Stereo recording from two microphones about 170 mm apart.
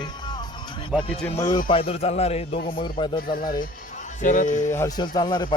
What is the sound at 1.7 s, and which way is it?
A man's voice, 35° left (ahead or behind).